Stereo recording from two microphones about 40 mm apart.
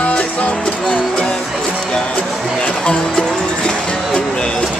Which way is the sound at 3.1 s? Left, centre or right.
Centre.